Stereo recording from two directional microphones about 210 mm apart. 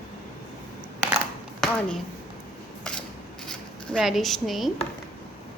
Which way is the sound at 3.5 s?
Centre (ahead or behind).